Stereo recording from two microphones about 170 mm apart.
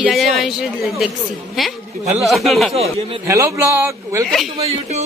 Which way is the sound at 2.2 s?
Centre (ahead or behind).